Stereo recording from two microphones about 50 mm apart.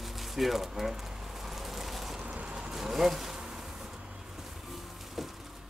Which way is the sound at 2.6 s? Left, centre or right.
Centre.